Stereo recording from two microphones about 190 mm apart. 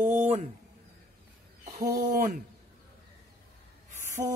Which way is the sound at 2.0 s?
45° right (ahead or behind).